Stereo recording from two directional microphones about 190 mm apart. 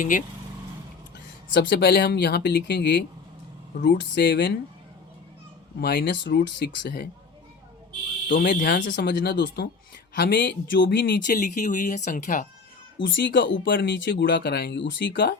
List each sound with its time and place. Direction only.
0.0 s speech: 40° left (ahead or behind)
1.5 s speech: 60° left (ahead or behind)
5.8 s speech: 65° left (ahead or behind)
8.3 s speech: 50° left (ahead or behind)
8.8 s speech: 70° left (ahead or behind)
11.3 s speech: 40° left (ahead or behind)
13.0 s speech: 75° left (ahead or behind)